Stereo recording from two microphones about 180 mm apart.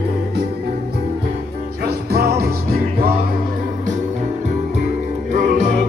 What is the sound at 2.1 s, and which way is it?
Music, 60° right (ahead or behind).